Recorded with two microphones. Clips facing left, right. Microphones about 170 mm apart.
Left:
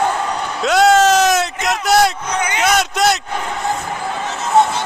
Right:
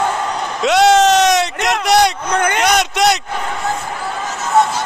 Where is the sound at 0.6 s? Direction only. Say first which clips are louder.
Right 1 dB; centre (ahead or behind).